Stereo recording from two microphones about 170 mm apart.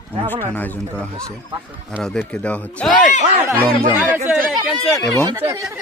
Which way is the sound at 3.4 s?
10° right (ahead or behind).